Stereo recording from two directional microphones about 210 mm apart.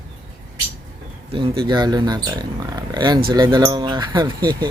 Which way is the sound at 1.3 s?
25° right (ahead or behind).